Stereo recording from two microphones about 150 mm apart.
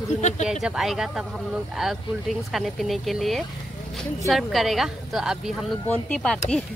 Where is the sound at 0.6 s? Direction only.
Centre (ahead or behind).